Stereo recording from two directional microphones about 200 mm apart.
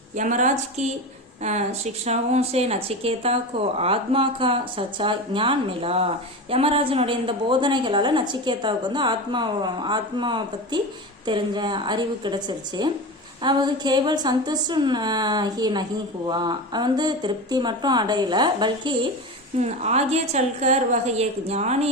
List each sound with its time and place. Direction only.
0.2 s a woman's voice: 40° right (ahead or behind); by 18.9 s 20° right (ahead or behind)
19.5 s a woman's voice: 35° right (ahead or behind)